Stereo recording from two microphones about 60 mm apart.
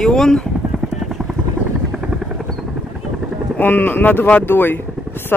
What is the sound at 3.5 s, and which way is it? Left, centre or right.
Speech, left.